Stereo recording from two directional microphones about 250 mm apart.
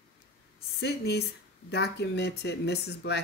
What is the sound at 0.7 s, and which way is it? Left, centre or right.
A man's voice, left.